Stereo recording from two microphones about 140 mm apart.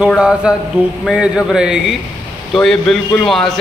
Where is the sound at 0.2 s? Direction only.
5° right (ahead or behind).